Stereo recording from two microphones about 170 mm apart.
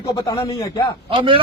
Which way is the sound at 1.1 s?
30° right (ahead or behind).